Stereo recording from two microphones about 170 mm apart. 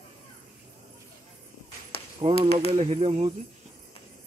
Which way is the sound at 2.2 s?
35° right (ahead or behind).